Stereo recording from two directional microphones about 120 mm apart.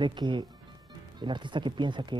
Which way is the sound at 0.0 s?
40° right (ahead or behind).